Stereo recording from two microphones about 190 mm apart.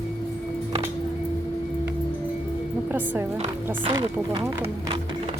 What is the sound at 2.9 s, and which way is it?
Speech, 10° right (ahead or behind).